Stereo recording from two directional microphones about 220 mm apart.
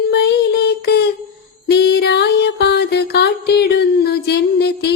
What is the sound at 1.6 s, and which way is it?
Music, 50° left (ahead or behind).